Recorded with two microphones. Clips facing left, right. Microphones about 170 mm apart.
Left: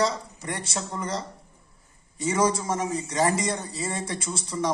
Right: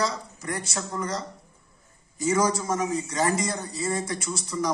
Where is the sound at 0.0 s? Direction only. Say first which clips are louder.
Left 3 dB; 30° left (ahead or behind).